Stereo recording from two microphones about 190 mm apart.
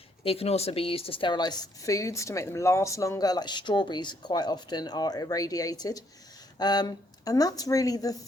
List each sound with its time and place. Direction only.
0.3 s a woman's voice: 30° left (ahead or behind)